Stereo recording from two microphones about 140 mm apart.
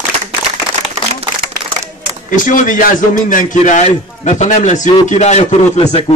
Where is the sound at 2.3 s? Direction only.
70° left (ahead or behind).